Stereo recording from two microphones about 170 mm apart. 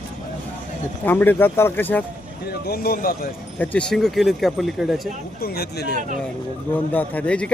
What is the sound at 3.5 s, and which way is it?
Speech, 10° left (ahead or behind).